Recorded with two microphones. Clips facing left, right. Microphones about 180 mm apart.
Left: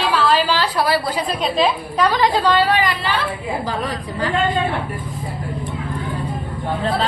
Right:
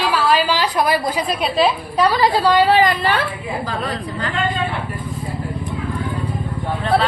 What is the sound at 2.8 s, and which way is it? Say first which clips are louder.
Speech: right 5 dB; 45° right (ahead or behind).